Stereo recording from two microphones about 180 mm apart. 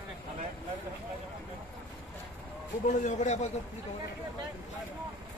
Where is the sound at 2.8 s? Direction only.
40° left (ahead or behind).